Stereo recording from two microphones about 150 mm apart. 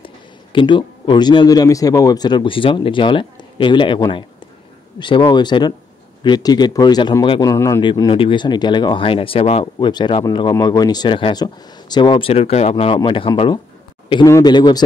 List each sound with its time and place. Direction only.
0.0 s speech: 35° left (ahead or behind)
7.8 s speech: 35° left (ahead or behind)